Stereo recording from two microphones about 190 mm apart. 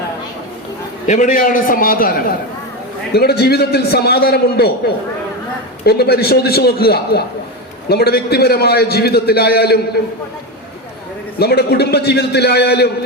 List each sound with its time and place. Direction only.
1.0 s a man's voice: 40° left (ahead or behind)
3.1 s a man's voice: 60° left (ahead or behind)
5.8 s a man's voice: 55° left (ahead or behind)
11.3 s a man's voice: 55° left (ahead or behind)